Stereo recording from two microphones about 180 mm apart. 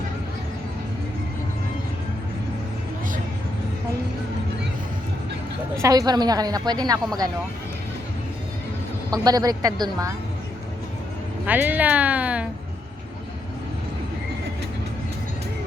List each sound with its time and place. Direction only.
5.8 s a woman's voice: 20° right (ahead or behind)
9.0 s a woman's voice: 20° right (ahead or behind)
11.4 s speech: 10° right (ahead or behind)